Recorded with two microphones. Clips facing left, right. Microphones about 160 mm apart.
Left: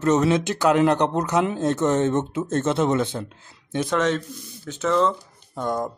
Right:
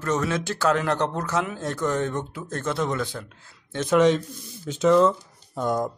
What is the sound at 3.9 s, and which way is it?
Speech, 15° right (ahead or behind).